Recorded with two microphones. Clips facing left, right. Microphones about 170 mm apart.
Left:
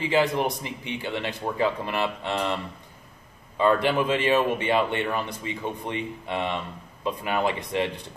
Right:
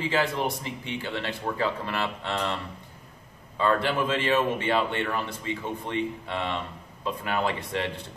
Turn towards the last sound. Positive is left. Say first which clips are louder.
# left 3 dB
turn(degrees=15)  # may be behind; listen again after turning